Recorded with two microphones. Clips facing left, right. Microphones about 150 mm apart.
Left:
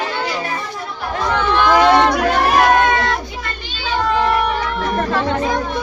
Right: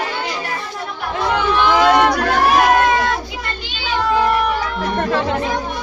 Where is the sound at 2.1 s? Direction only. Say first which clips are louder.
Even; centre (ahead or behind).